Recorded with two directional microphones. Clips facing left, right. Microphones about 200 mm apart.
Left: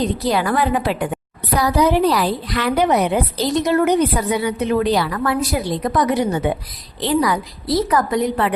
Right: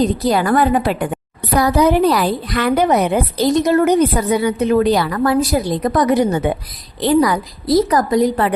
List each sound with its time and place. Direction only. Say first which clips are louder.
0.0 s a woman's voice: right 3 dB; 45° right (ahead or behind)